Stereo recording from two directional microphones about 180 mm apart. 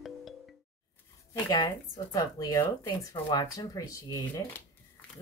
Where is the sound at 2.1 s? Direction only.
20° left (ahead or behind).